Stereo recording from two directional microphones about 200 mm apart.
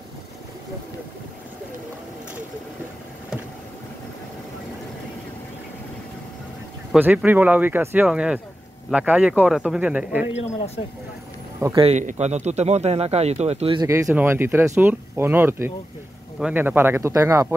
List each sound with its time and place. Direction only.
6.9 s speech: 5° right (ahead or behind)
11.6 s a man's voice: 20° right (ahead or behind)
11.9 s speech: 35° right (ahead or behind)
13.8 s speech: 15° right (ahead or behind)